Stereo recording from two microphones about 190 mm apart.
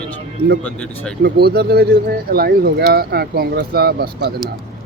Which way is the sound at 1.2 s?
55° right (ahead or behind).